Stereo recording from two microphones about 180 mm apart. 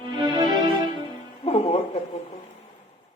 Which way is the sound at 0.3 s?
25° right (ahead or behind).